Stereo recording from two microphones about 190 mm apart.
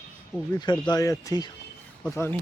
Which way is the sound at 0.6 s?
20° left (ahead or behind).